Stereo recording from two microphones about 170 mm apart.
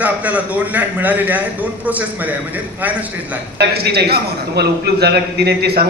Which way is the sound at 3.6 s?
70° right (ahead or behind).